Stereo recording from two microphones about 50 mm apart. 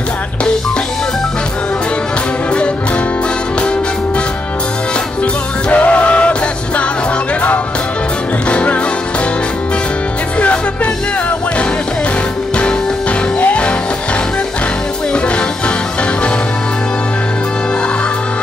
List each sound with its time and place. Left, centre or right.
5.2 s music: left
8.5 s music: left
10.4 s music: left
13.4 s music: left
15.1 s music: left